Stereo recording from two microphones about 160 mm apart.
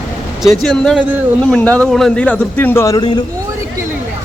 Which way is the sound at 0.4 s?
5° left (ahead or behind).